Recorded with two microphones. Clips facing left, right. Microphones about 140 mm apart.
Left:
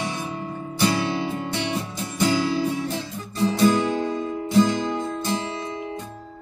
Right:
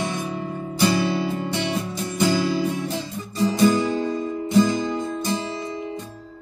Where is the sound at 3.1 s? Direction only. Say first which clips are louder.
Right 1 dB; 15° right (ahead or behind).